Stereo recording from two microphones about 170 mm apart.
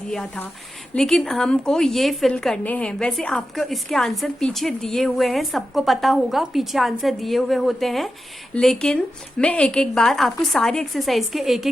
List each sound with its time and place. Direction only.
0.1 s a woman's voice: 5° left (ahead or behind)